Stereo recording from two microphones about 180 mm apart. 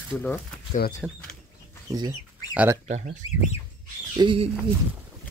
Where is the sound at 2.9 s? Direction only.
40° right (ahead or behind).